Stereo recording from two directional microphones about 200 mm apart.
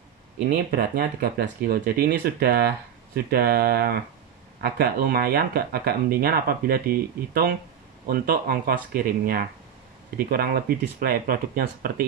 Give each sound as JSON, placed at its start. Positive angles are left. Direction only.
{"t": 0.7, "sound": "speech", "side_deg": -45}